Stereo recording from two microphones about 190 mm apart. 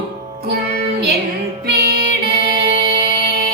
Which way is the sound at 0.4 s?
55° right (ahead or behind).